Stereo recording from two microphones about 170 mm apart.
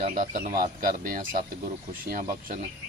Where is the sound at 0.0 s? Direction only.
50° right (ahead or behind).